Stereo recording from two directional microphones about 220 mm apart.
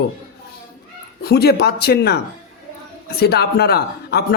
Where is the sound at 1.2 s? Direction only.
45° left (ahead or behind).